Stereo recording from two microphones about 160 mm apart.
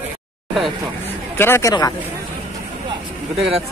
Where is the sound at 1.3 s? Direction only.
15° left (ahead or behind).